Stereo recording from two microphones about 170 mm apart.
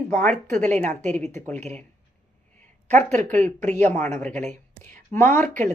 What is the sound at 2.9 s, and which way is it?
Speech, 45° right (ahead or behind).